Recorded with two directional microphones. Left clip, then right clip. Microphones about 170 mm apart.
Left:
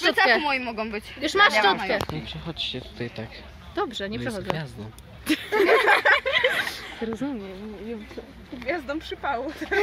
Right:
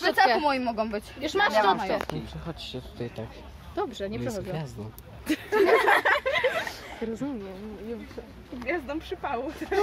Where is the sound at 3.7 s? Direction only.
55° left (ahead or behind).